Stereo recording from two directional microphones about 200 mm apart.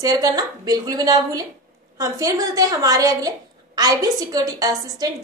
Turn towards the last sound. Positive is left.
turn(degrees=-20)  # may be behind; listen again after turning